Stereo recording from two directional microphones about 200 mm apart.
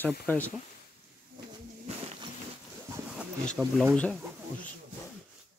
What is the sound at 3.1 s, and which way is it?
Bee, 5° right (ahead or behind).